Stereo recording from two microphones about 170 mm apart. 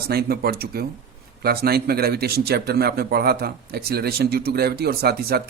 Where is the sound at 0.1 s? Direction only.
65° right (ahead or behind).